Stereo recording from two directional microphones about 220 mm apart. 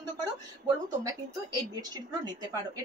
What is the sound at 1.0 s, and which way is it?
Speech, 15° right (ahead or behind).